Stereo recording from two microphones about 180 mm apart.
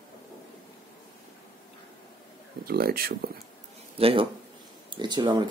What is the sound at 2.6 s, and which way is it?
Speech, 60° right (ahead or behind).